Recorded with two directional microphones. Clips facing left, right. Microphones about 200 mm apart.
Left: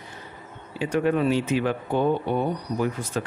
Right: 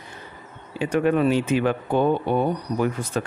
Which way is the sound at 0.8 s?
55° right (ahead or behind).